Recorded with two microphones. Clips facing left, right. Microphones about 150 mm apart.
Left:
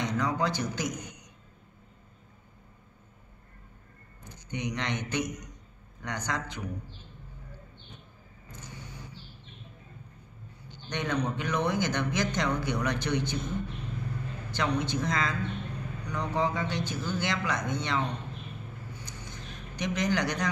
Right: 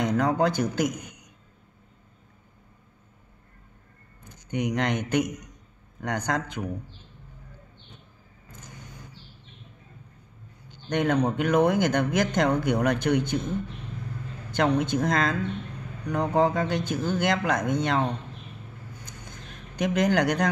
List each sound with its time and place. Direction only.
0.0 s speech: 50° right (ahead or behind)
4.3 s a man's voice: 50° right (ahead or behind)
8.5 s vehicle: 50° right (ahead or behind)
10.9 s speech: 55° right (ahead or behind)
14.5 s speech: 50° right (ahead or behind)
18.9 s a sound: 50° right (ahead or behind)